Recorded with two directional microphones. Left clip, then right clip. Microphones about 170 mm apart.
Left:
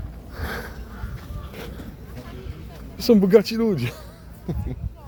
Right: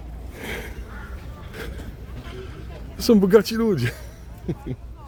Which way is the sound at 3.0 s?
15° right (ahead or behind).